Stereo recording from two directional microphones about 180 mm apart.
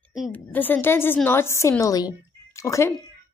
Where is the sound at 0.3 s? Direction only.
10° left (ahead or behind).